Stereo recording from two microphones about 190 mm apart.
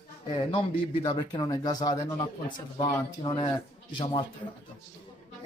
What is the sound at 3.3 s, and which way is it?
Speech, 25° left (ahead or behind).